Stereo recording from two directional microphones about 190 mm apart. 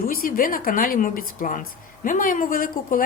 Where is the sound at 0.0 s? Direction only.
50° left (ahead or behind).